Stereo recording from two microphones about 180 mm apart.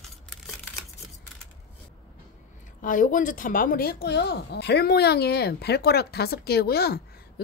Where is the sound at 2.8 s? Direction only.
50° left (ahead or behind).